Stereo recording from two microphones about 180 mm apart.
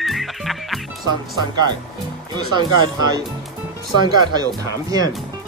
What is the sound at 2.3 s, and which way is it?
Speech, 25° right (ahead or behind).